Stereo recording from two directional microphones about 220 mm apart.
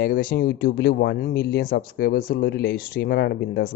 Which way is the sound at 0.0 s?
40° left (ahead or behind).